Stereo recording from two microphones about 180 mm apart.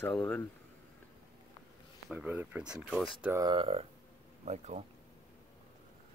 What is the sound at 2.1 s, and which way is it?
Speech, 5° right (ahead or behind).